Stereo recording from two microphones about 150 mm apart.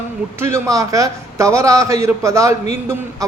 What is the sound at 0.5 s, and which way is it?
A man's voice, 20° right (ahead or behind).